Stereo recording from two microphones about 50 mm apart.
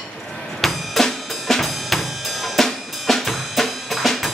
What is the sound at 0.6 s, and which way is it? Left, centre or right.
Drum kit, centre.